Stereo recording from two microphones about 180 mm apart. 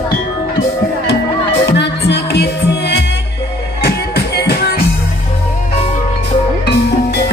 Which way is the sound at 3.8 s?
65° left (ahead or behind).